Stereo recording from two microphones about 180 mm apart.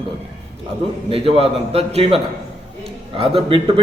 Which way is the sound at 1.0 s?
30° right (ahead or behind).